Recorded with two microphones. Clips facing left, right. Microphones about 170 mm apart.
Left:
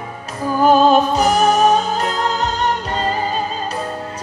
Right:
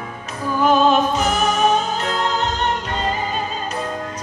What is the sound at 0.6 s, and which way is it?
Music, 40° left (ahead or behind).